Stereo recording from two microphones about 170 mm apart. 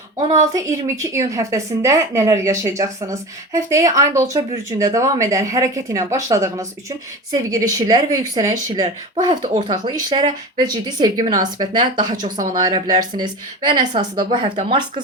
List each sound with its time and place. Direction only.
0.2 s a woman's voice: 20° right (ahead or behind)
12.2 s speech: 50° right (ahead or behind)
12.5 s a woman's voice: 25° right (ahead or behind)